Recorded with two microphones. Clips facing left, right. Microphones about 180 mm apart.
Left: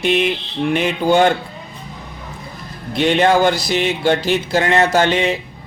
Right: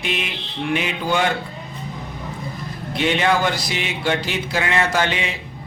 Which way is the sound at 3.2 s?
35° left (ahead or behind).